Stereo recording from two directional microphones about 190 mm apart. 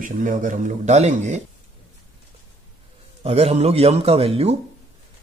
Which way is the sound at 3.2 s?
35° right (ahead or behind).